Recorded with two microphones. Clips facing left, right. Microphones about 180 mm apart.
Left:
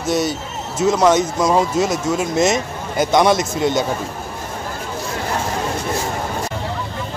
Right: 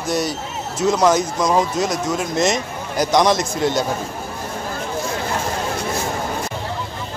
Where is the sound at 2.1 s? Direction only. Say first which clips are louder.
Left 3 dB; 5° left (ahead or behind).